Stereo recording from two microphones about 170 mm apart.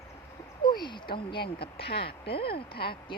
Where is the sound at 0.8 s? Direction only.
25° left (ahead or behind).